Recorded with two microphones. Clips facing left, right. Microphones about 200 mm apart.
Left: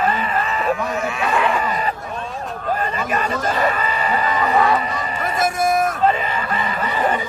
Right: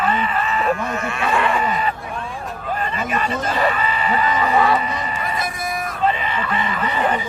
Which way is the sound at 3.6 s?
45° left (ahead or behind).